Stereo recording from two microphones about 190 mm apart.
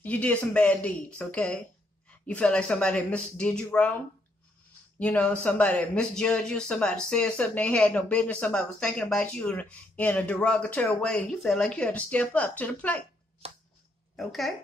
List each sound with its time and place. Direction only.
0.0 s speech: 5° left (ahead or behind)
4.9 s speech: 5° left (ahead or behind)
13.4 s a sound: 30° right (ahead or behind)
14.1 s speech: centre (ahead or behind)